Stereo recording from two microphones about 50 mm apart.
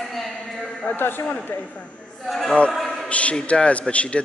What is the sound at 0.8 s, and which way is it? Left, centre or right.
A man's voice, left.